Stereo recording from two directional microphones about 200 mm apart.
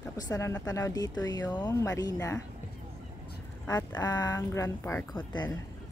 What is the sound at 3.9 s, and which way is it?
Speech, 20° left (ahead or behind).